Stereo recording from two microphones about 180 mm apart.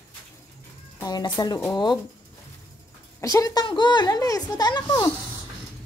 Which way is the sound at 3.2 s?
20° left (ahead or behind).